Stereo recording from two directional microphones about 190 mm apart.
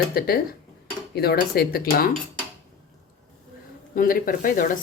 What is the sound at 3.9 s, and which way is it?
Speech, 45° left (ahead or behind).